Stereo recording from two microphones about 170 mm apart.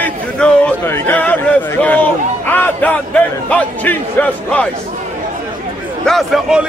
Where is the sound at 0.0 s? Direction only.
10° left (ahead or behind).